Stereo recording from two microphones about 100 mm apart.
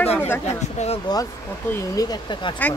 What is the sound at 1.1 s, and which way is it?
Speech, 45° left (ahead or behind).